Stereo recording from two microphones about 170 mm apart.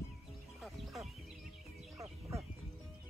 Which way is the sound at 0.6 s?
Centre (ahead or behind).